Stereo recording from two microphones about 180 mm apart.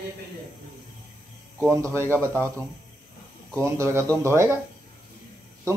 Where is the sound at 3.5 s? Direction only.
15° right (ahead or behind).